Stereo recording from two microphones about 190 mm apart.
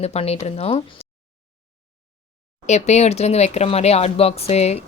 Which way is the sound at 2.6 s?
35° left (ahead or behind).